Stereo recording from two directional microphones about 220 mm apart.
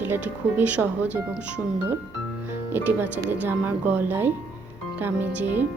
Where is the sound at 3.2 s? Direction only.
10° right (ahead or behind).